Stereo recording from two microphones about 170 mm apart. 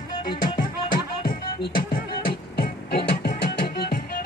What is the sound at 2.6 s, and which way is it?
Music, 65° left (ahead or behind).